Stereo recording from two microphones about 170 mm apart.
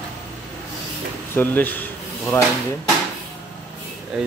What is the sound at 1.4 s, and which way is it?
Speech, 10° left (ahead or behind).